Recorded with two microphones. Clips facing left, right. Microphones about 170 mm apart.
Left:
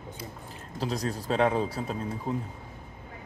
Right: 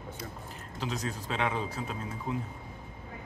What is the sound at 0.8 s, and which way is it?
Speech, 35° left (ahead or behind).